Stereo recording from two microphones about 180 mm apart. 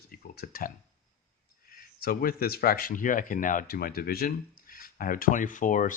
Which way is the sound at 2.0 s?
55° left (ahead or behind).